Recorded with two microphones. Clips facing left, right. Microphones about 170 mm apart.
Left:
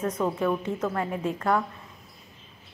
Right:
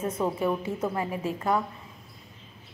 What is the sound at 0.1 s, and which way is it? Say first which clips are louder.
A woman's voice: left 1 dB; 10° right (ahead or behind).